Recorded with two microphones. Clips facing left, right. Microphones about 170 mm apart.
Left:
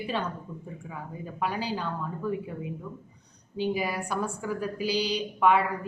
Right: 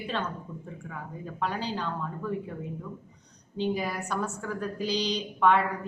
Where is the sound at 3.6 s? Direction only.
10° left (ahead or behind).